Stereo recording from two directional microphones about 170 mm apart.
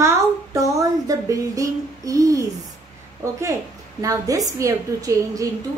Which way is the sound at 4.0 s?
20° right (ahead or behind).